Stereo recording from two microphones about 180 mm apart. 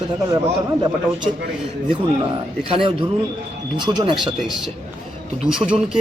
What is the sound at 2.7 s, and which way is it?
Speech, 30° right (ahead or behind).